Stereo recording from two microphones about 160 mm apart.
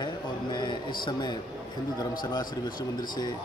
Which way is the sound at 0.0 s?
25° left (ahead or behind).